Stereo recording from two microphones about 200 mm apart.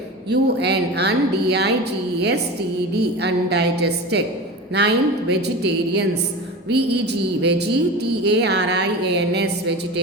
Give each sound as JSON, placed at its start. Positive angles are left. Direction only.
{"t": 0.3, "sound": "speech", "side_deg": -55}